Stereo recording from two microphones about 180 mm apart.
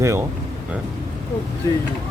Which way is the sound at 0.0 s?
15° right (ahead or behind).